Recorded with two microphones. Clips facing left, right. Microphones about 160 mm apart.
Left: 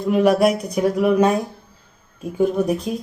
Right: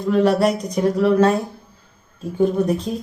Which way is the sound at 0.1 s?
10° left (ahead or behind).